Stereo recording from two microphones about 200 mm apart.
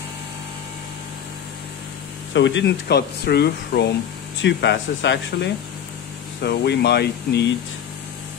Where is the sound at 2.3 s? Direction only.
65° left (ahead or behind).